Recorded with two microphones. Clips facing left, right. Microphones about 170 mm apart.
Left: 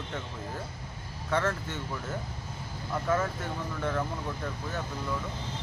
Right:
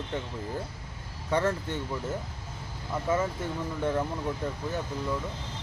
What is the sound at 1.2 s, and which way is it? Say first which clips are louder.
Speech: right 2 dB; 15° right (ahead or behind).